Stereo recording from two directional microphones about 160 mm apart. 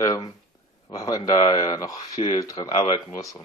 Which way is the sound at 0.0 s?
20° left (ahead or behind).